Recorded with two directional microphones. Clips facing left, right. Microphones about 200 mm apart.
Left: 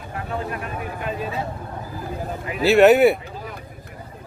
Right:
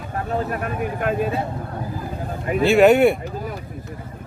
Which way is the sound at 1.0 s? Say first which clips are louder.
Right 6 dB; 55° right (ahead or behind).